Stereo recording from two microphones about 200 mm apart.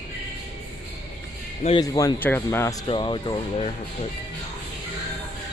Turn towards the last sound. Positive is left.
turn(degrees=25)  # may be behind; listen again after turning